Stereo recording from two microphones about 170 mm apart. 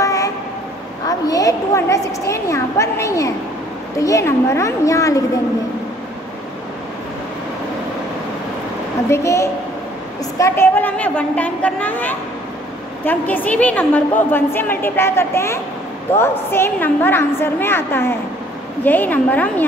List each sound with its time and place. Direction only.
0.0 s train: 20° left (ahead or behind)
1.0 s a woman's voice: 20° left (ahead or behind)
9.1 s a woman's voice: 15° left (ahead or behind)